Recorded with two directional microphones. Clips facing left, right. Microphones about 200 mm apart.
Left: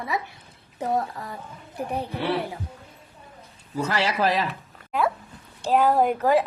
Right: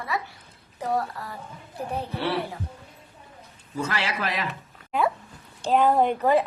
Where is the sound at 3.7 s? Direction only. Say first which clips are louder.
Left 4 dB; 35° left (ahead or behind).